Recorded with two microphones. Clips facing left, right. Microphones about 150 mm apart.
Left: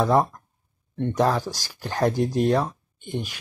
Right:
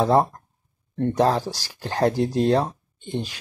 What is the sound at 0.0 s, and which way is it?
Speech, 25° right (ahead or behind).